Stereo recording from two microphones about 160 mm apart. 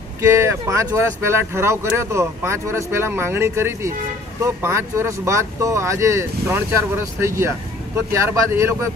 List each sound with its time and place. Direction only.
0.2 s speech: 20° right (ahead or behind)